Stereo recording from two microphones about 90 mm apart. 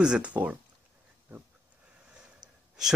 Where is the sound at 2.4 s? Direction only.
50° right (ahead or behind).